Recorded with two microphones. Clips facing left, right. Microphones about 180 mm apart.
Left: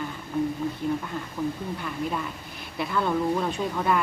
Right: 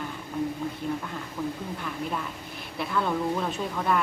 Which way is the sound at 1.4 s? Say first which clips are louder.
Left 3 dB; centre (ahead or behind).